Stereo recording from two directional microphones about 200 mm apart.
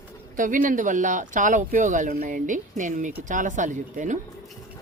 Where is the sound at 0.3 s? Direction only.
40° right (ahead or behind).